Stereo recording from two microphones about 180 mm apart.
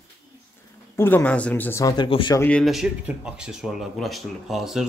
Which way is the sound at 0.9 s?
10° left (ahead or behind).